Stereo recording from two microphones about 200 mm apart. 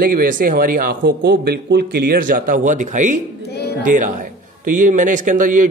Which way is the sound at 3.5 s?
55° left (ahead or behind).